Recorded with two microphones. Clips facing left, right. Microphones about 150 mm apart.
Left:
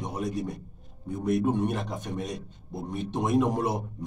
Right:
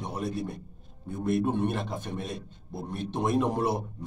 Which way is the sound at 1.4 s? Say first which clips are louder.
Left 1 dB; 15° left (ahead or behind).